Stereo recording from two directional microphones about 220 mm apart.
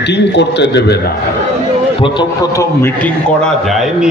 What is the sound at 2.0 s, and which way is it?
Speech, 20° left (ahead or behind).